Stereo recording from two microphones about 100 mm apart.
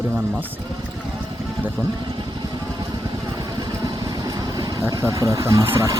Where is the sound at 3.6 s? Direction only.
45° right (ahead or behind).